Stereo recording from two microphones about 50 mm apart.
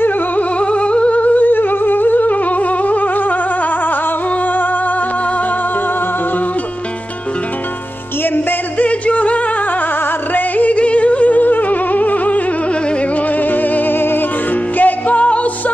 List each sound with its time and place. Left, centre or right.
0.4 s music: left
8.7 s music: left
13.4 s music: left
14.8 s music: left